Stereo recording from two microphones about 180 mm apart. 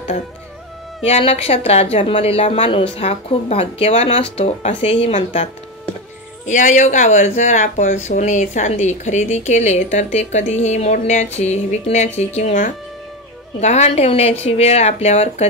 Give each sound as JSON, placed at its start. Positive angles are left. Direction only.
{"t": 1.0, "sound": "speech", "side_deg": 35}